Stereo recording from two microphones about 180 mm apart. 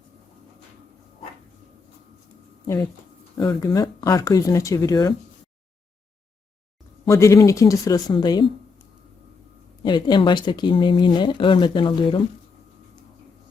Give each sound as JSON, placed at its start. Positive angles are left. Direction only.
{"t": 3.3, "sound": "speech", "side_deg": 20}
{"t": 7.1, "sound": "speech", "side_deg": 15}
{"t": 9.8, "sound": "speech", "side_deg": 25}